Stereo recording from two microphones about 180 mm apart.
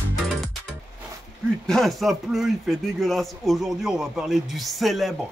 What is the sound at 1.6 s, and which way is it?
Speech, centre (ahead or behind).